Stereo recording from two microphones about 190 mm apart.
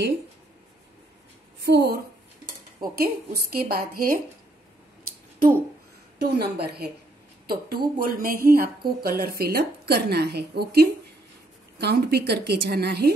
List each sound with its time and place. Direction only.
1.6 s speech: 60° right (ahead or behind)
2.8 s a woman's voice: 50° right (ahead or behind)
6.1 s a woman's voice: 55° right (ahead or behind)